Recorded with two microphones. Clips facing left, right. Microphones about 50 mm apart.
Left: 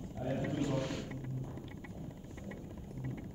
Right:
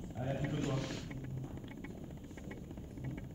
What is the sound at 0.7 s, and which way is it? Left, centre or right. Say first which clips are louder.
Speech: left 4 dB; centre.